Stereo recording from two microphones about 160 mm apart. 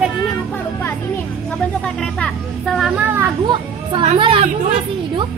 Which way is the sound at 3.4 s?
30° right (ahead or behind).